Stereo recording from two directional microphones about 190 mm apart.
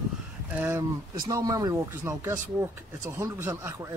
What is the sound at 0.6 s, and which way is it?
Speech, 10° right (ahead or behind).